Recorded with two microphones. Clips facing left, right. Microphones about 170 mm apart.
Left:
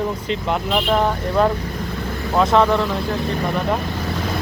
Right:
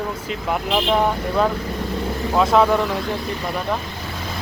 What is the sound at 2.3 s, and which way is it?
Speech, 5° right (ahead or behind).